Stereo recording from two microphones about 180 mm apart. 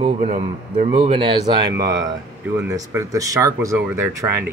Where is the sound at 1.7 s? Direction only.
75° right (ahead or behind).